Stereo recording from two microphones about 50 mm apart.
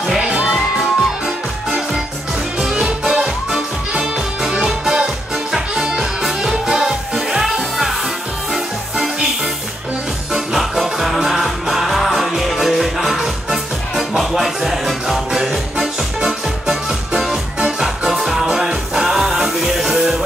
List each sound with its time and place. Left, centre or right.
0.5 s music: centre
8.9 s music: centre
10.3 s music: centre
17.8 s music: centre